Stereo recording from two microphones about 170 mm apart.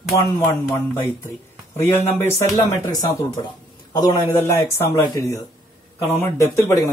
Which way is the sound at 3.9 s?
25° left (ahead or behind).